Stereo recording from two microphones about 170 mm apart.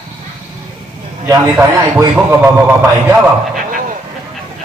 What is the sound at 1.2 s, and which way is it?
A man's voice, 20° right (ahead or behind).